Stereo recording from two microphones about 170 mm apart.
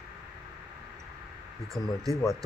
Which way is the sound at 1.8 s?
5° left (ahead or behind).